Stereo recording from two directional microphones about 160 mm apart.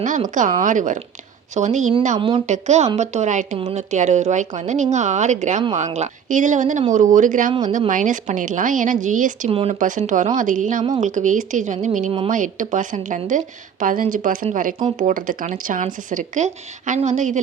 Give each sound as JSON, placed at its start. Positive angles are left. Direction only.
{"t": 0.3, "sound": "speech", "side_deg": -55}
{"t": 2.1, "sound": "speech", "side_deg": -30}
{"t": 2.5, "sound": "a woman's voice", "side_deg": -45}
{"t": 9.5, "sound": "speech", "side_deg": -35}
{"t": 9.7, "sound": "a woman's voice", "side_deg": -55}